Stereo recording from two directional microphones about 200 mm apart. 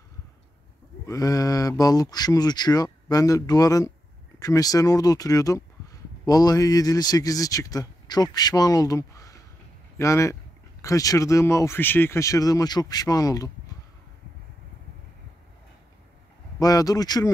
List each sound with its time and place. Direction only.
1.0 s a man's voice: 15° left (ahead or behind)
16.5 s a man's voice: 20° left (ahead or behind)